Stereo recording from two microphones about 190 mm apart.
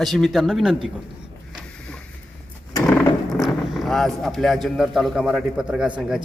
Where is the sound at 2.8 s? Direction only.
15° left (ahead or behind).